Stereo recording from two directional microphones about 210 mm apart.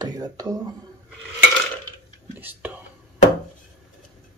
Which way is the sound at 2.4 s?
10° right (ahead or behind).